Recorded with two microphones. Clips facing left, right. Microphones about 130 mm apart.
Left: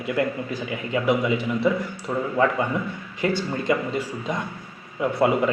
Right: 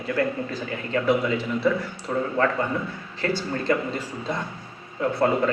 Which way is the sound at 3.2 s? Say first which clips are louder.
Left 2 dB; 15° left (ahead or behind).